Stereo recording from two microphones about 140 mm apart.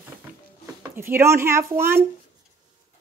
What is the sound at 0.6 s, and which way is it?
Speech, 20° right (ahead or behind).